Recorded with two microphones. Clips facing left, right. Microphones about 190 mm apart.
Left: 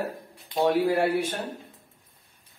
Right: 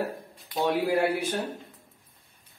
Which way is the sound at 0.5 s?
25° left (ahead or behind).